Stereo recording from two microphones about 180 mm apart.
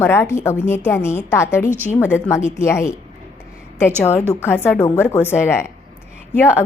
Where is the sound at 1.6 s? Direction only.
10° right (ahead or behind).